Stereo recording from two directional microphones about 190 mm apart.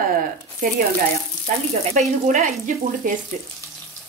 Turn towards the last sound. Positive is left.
turn(degrees=-45)  # may be behind; listen again after turning